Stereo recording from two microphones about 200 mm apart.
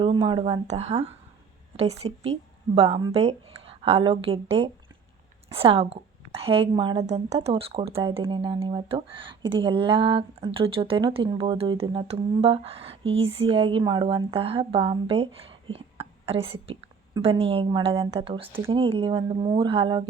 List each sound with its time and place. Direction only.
0.0 s a woman's voice: 25° right (ahead or behind)